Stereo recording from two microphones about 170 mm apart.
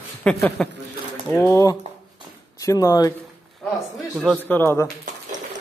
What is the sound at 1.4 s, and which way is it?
Speech, 20° left (ahead or behind).